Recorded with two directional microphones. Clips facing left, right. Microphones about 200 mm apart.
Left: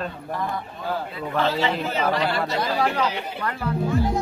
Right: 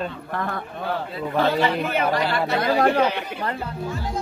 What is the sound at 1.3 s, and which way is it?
A man's voice, 55° right (ahead or behind).